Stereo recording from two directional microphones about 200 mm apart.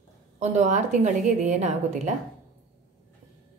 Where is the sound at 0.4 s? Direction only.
35° right (ahead or behind).